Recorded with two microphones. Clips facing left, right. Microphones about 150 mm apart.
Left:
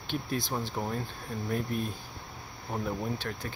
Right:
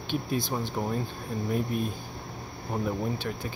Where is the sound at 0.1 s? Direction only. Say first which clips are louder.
Right 3 dB; centre (ahead or behind).